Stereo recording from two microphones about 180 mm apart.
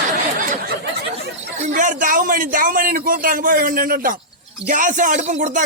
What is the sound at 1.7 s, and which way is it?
Speech, 45° right (ahead or behind).